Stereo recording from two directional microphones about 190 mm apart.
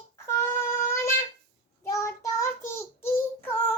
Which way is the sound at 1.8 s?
15° left (ahead or behind).